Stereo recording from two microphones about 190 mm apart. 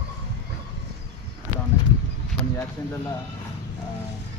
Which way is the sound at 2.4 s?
5° left (ahead or behind).